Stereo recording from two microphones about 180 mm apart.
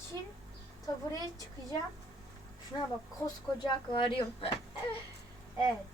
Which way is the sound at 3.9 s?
25° left (ahead or behind).